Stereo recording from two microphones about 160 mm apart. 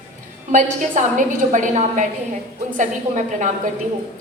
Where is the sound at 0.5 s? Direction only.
50° right (ahead or behind).